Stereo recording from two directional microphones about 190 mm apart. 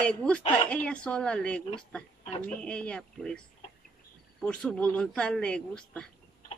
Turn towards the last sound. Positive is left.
turn(degrees=5)  # may be behind; listen again after turning